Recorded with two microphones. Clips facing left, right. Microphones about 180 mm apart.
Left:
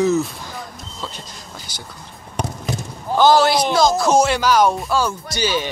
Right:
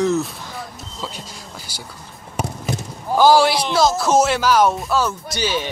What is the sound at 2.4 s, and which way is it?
Basketball bounce, 5° right (ahead or behind).